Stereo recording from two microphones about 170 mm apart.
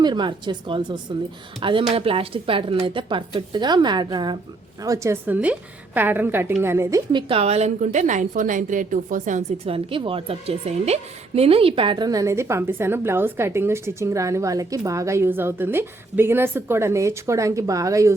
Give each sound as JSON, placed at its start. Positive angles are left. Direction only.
{"t": 0.0, "sound": "a woman's voice", "side_deg": -25}
{"t": 7.1, "sound": "a woman's voice", "side_deg": -30}
{"t": 9.6, "sound": "a woman's voice", "side_deg": -30}